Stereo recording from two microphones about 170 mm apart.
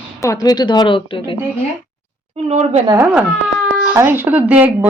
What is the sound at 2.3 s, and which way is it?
Speech, 40° right (ahead or behind).